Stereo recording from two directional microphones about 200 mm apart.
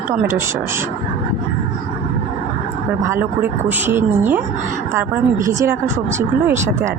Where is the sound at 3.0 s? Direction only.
10° right (ahead or behind).